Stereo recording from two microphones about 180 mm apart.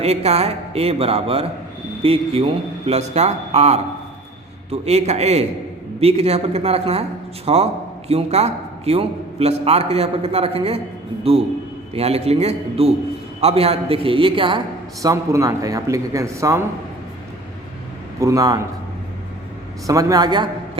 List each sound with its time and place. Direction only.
0.0 s a man's voice: 35° right (ahead or behind)
15.0 s speech: 15° right (ahead or behind)
18.2 s a man's voice: 20° right (ahead or behind)
19.9 s a man's voice: 20° right (ahead or behind)